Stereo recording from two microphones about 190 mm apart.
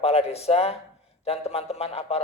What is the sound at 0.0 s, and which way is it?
A man's voice, 30° left (ahead or behind).